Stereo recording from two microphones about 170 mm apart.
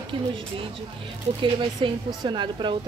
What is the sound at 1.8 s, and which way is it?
Speech, 25° right (ahead or behind).